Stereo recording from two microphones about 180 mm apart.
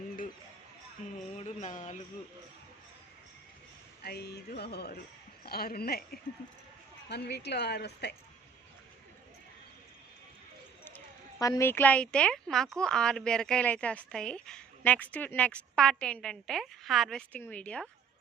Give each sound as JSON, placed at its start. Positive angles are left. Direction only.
{"t": 1.4, "sound": "a sound", "side_deg": 40}
{"t": 4.0, "sound": "speech", "side_deg": 65}
{"t": 7.1, "sound": "a woman's voice", "side_deg": 65}
{"t": 10.8, "sound": "speech", "side_deg": 15}